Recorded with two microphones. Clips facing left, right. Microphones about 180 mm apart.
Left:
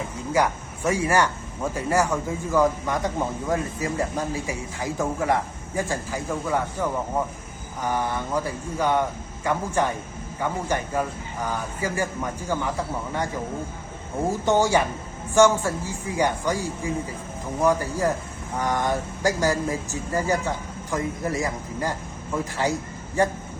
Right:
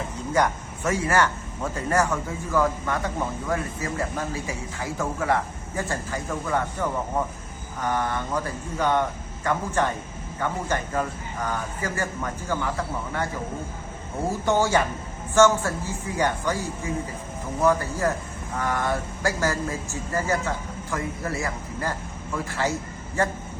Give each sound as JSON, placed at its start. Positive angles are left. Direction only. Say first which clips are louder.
{"t": 0.3, "sound": "speech", "louder": "even", "side_deg": 10}
{"t": 14.3, "sound": "speech", "louder": "left 2 dB", "side_deg": 15}